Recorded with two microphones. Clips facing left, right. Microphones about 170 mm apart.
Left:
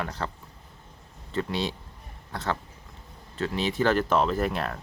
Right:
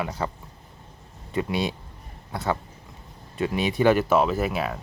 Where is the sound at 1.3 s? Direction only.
10° right (ahead or behind).